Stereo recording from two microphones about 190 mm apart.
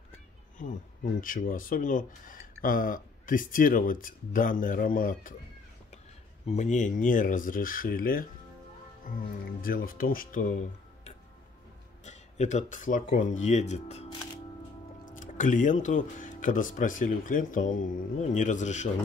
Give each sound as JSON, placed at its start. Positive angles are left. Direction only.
{"t": 0.6, "sound": "speech", "side_deg": 45}
{"t": 6.4, "sound": "speech", "side_deg": 35}
{"t": 9.6, "sound": "speech", "side_deg": 50}
{"t": 12.0, "sound": "speech", "side_deg": 35}
{"t": 15.0, "sound": "speech", "side_deg": 45}